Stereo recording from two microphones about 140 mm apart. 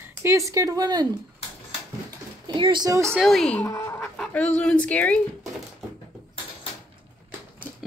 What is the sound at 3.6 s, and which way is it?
Speech, 15° left (ahead or behind).